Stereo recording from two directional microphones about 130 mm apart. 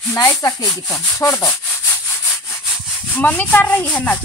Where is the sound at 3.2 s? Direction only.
10° left (ahead or behind).